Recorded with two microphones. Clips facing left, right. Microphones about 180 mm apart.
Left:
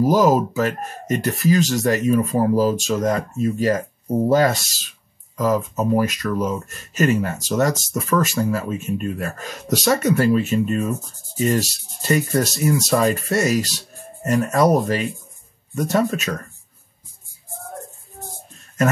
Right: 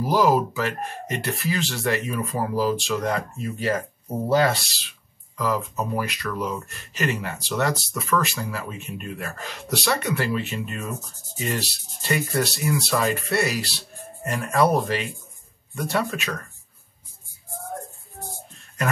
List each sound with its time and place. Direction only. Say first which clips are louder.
0.0 s speech: left 4 dB; 45° left (ahead or behind)